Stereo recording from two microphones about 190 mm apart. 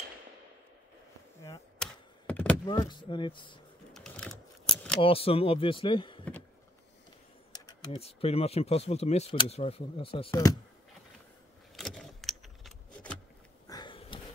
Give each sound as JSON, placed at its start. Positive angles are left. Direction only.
{"t": 1.8, "sound": "computer keyboard", "side_deg": 5}
{"t": 2.6, "sound": "speech", "side_deg": 20}
{"t": 3.9, "sound": "typing", "side_deg": 5}
{"t": 5.0, "sound": "speech", "side_deg": 30}
{"t": 7.5, "sound": "a sound", "side_deg": 20}
{"t": 8.0, "sound": "speech", "side_deg": 30}
{"t": 11.7, "sound": "keys jangling", "side_deg": 0}
{"t": 13.7, "sound": "sniff", "side_deg": 25}